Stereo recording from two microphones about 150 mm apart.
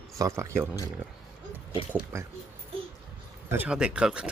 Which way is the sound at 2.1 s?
15° right (ahead or behind).